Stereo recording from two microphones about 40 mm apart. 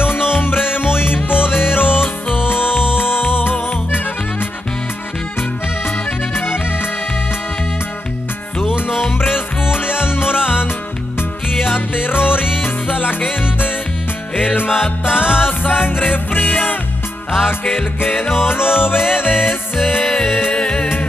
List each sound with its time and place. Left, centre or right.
0.0 s music: left
8.7 s music: left
18.0 s music: left
20.5 s music: left